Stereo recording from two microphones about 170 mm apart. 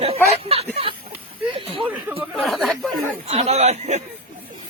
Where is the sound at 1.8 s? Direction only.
10° right (ahead or behind).